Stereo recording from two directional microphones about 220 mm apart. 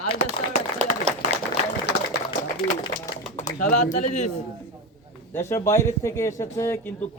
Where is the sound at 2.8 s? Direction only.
20° left (ahead or behind).